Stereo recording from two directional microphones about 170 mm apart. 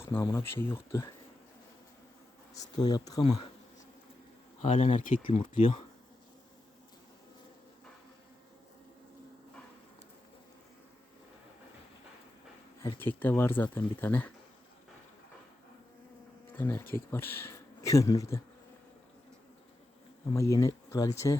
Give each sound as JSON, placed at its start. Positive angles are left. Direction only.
{"t": 0.0, "sound": "speech", "side_deg": 15}
{"t": 2.6, "sound": "speech", "side_deg": 25}
{"t": 4.6, "sound": "speech", "side_deg": 40}
{"t": 5.2, "sound": "speech", "side_deg": 30}
{"t": 13.0, "sound": "speech", "side_deg": 10}
{"t": 16.5, "sound": "speech", "side_deg": 15}
{"t": 20.3, "sound": "speech", "side_deg": 20}